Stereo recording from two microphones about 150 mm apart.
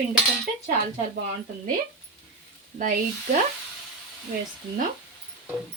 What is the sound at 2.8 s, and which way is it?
Speech, 60° right (ahead or behind).